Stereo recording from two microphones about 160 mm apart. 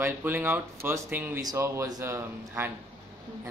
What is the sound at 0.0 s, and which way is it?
Speech, 10° right (ahead or behind).